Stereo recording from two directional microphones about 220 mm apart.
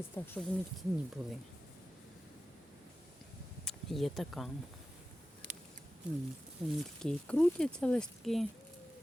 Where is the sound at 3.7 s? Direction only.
Centre (ahead or behind).